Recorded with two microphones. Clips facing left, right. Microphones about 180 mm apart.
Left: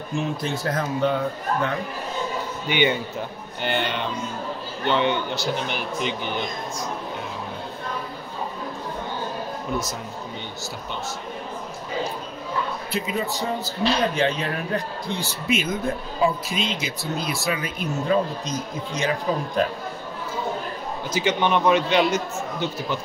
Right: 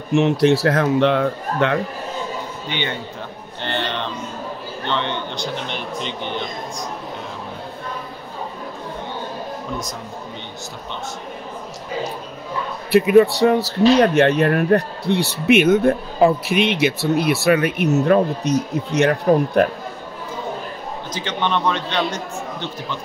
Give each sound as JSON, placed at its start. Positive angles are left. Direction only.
{"t": 0.1, "sound": "speech", "side_deg": -75}
{"t": 2.7, "sound": "a man's voice", "side_deg": 10}
{"t": 12.9, "sound": "speech", "side_deg": -65}
{"t": 21.1, "sound": "a man's voice", "side_deg": 10}